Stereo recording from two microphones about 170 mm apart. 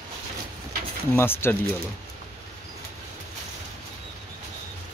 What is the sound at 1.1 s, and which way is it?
Speech, 15° left (ahead or behind).